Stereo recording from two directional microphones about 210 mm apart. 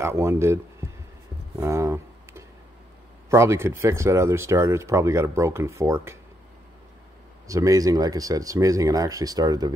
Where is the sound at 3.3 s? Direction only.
15° right (ahead or behind).